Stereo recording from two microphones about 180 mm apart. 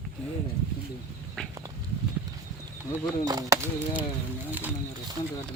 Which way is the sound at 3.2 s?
20° right (ahead or behind).